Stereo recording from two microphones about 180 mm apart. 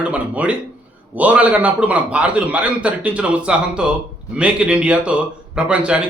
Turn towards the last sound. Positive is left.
turn(degrees=-5)  # may be behind; listen again after turning